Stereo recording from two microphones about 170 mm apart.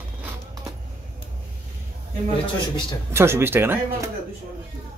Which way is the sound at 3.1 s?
15° right (ahead or behind).